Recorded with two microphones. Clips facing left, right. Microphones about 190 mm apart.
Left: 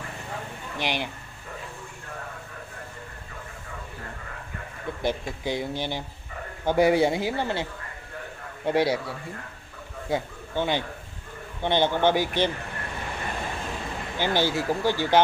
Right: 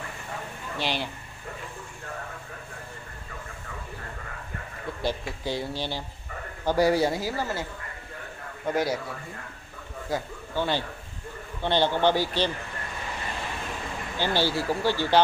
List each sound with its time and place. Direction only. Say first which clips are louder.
0.7 s speech: left 1 dB; 15° left (ahead or behind)
5.0 s a man's voice: left 2 dB; 15° left (ahead or behind)
8.6 s a man's voice: left 3 dB; 30° left (ahead or behind)
14.1 s speech: left 1 dB; 15° left (ahead or behind)